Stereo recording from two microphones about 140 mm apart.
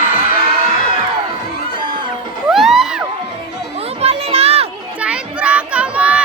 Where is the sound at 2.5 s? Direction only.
Centre (ahead or behind).